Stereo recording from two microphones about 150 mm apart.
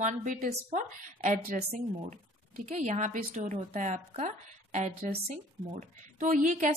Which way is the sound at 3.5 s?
50° right (ahead or behind).